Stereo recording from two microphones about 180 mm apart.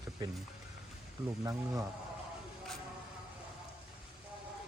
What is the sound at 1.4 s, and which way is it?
Speech, 20° right (ahead or behind).